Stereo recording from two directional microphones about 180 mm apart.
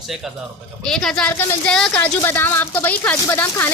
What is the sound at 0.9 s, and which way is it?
Speech, 5° left (ahead or behind).